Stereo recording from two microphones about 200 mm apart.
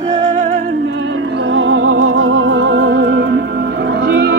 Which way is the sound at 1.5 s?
75° right (ahead or behind).